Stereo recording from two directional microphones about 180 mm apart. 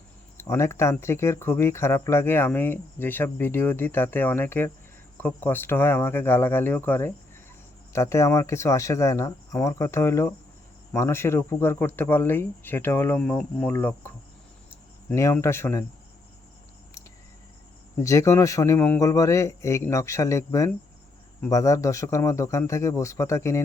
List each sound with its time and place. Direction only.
0.3 s speech: 15° left (ahead or behind)
15.1 s speech: 15° left (ahead or behind)
18.0 s speech: 20° left (ahead or behind)